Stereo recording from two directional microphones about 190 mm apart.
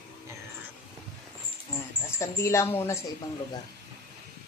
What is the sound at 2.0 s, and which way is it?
Speech, 15° left (ahead or behind).